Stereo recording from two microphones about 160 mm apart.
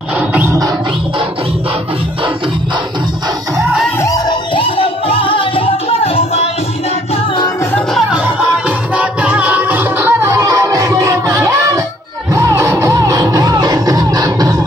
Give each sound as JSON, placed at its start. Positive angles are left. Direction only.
{"t": 0.3, "sound": "music", "side_deg": -10}
{"t": 4.0, "sound": "music", "side_deg": 25}
{"t": 7.7, "sound": "music", "side_deg": 0}